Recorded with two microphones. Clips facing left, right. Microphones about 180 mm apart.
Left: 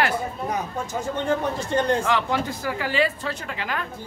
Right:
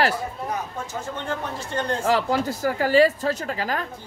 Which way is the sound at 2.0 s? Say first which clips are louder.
Right 2 dB; 40° right (ahead or behind).